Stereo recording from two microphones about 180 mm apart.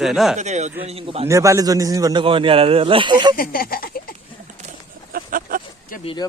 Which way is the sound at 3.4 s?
55° left (ahead or behind).